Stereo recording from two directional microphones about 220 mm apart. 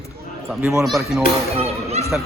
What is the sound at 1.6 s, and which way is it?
Speech, 30° right (ahead or behind).